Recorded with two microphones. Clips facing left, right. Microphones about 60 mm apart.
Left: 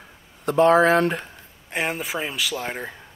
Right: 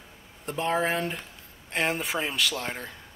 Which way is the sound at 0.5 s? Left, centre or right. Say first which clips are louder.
Left 11 dB; left.